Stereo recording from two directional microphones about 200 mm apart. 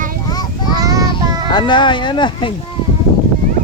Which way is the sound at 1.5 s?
20° left (ahead or behind).